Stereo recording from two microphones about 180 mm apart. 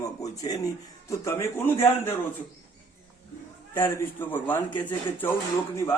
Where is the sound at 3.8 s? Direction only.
10° left (ahead or behind).